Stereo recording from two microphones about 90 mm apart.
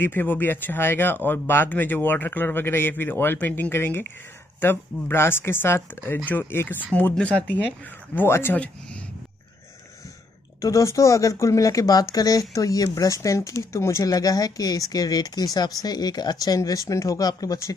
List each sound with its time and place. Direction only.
0.0 s speech: 20° left (ahead or behind)
10.6 s speech: 35° left (ahead or behind)